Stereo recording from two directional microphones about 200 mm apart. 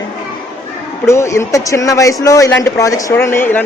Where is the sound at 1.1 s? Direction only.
15° left (ahead or behind).